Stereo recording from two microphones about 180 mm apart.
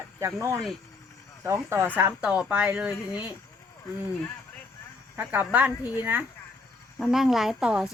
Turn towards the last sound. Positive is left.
turn(degrees=-5)  # may be behind; listen again after turning